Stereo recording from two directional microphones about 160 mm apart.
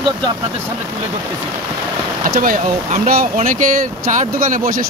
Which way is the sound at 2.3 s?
60° right (ahead or behind).